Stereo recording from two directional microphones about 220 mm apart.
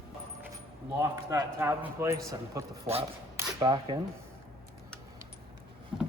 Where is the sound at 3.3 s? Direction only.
20° right (ahead or behind).